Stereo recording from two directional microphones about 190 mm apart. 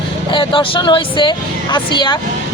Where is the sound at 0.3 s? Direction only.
25° left (ahead or behind).